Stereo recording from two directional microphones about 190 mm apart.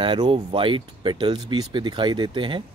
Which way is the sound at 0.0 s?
25° right (ahead or behind).